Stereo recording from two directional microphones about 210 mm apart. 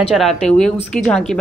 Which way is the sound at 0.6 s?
5° left (ahead or behind).